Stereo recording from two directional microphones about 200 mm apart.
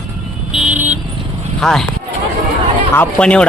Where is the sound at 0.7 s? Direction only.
10° right (ahead or behind).